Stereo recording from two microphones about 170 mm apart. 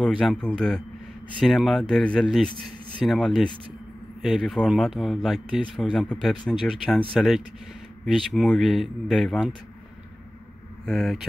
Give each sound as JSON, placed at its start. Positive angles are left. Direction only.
{"t": 0.0, "sound": "speech", "side_deg": 5}
{"t": 10.9, "sound": "speech", "side_deg": 0}